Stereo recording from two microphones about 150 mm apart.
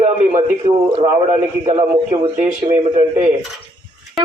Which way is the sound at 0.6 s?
35° right (ahead or behind).